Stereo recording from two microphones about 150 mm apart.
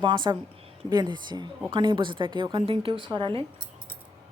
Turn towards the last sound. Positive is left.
turn(degrees=-35)  # may be behind; listen again after turning